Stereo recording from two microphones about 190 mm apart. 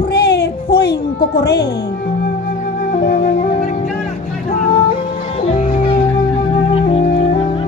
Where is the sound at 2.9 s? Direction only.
50° left (ahead or behind).